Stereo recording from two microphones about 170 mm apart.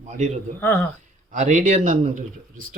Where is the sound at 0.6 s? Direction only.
15° left (ahead or behind).